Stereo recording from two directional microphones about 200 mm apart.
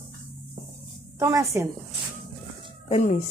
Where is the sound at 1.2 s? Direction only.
15° right (ahead or behind).